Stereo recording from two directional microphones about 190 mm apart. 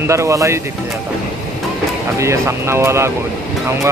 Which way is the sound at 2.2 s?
15° right (ahead or behind).